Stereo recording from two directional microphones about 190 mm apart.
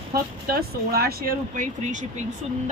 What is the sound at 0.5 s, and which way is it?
Speech, 55° right (ahead or behind).